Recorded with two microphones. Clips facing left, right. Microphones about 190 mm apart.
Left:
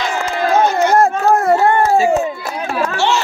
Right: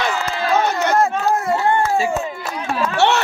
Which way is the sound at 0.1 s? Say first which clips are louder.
Left 3 dB; 50° left (ahead or behind).